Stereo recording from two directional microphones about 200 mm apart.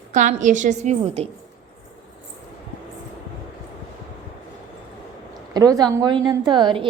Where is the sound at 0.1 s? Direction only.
35° right (ahead or behind).